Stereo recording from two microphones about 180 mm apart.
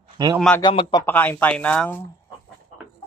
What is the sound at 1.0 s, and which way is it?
Speech, 10° left (ahead or behind).